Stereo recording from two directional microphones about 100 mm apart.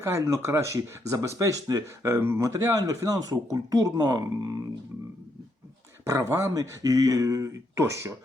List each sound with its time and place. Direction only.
0.0 s speech: 30° right (ahead or behind)
6.1 s speech: 30° right (ahead or behind)